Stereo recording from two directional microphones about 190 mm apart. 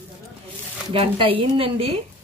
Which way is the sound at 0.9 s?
30° right (ahead or behind).